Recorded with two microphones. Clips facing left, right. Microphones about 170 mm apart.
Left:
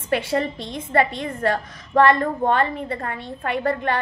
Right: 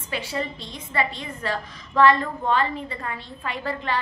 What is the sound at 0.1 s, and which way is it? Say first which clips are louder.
A woman's voice: left 7 dB; 55° left (ahead or behind).